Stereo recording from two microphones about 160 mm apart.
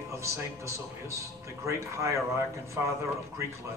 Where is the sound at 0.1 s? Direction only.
20° right (ahead or behind).